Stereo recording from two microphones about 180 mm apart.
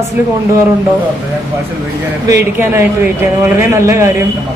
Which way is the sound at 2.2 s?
15° right (ahead or behind).